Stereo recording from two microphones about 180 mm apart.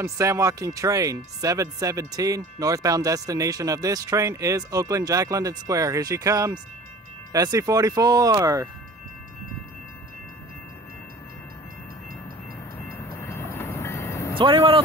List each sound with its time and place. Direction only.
0.0 s speech: 15° right (ahead or behind)
12.9 s train: 15° left (ahead or behind)
14.3 s speech: 30° right (ahead or behind)